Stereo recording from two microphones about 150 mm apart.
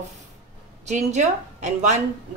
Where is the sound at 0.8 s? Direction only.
50° right (ahead or behind).